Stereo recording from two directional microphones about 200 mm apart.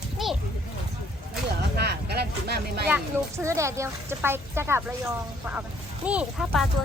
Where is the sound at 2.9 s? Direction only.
15° right (ahead or behind).